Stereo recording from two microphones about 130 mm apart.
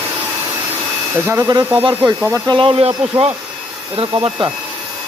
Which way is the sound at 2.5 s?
40° right (ahead or behind).